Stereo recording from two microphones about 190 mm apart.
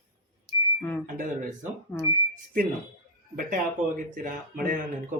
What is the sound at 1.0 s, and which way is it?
Speech, 45° right (ahead or behind).